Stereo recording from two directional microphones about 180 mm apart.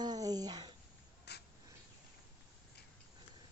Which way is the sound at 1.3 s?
65° left (ahead or behind).